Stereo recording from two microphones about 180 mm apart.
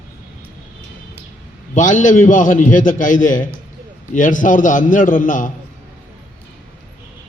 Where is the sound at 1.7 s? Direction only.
45° left (ahead or behind).